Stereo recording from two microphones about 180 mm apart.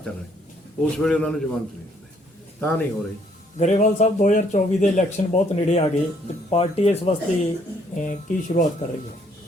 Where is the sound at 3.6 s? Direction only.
40° left (ahead or behind).